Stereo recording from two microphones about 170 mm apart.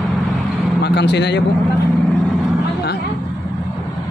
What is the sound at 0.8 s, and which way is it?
Speech, 80° left.